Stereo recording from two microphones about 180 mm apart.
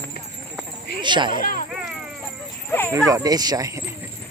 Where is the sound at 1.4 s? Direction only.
50° left (ahead or behind).